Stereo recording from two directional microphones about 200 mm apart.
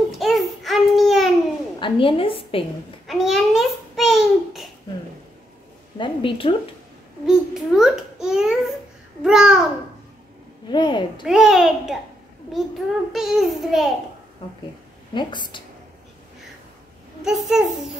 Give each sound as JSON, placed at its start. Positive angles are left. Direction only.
{"t": 0.2, "sound": "a sound", "side_deg": 0}
{"t": 1.8, "sound": "a woman's voice", "side_deg": 25}
{"t": 3.1, "sound": "a sound", "side_deg": 0}
{"t": 5.9, "sound": "a woman's voice", "side_deg": 25}
{"t": 7.2, "sound": "babbling", "side_deg": 0}
{"t": 9.2, "sound": "a child's voice", "side_deg": -5}
{"t": 10.7, "sound": "a child's voice", "side_deg": 25}
{"t": 11.2, "sound": "a child's voice", "side_deg": 0}
{"t": 13.1, "sound": "a child's voice", "side_deg": 0}
{"t": 15.1, "sound": "a child's voice", "side_deg": 25}
{"t": 17.2, "sound": "a child's voice", "side_deg": 0}